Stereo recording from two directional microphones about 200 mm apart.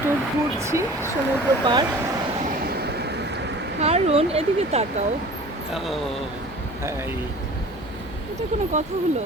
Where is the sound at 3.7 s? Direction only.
30° right (ahead or behind).